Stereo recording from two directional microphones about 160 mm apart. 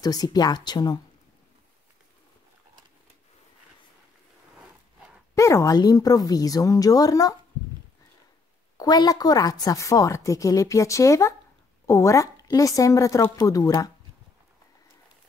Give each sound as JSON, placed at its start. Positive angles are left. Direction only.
{"t": 0.0, "sound": "a woman's voice", "side_deg": 25}
{"t": 4.6, "sound": "a sound", "side_deg": -5}
{"t": 5.3, "sound": "a woman's voice", "side_deg": 20}
{"t": 8.7, "sound": "a woman's voice", "side_deg": 25}